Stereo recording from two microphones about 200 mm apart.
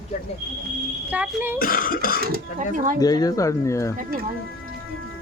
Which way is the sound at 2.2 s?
50° right (ahead or behind).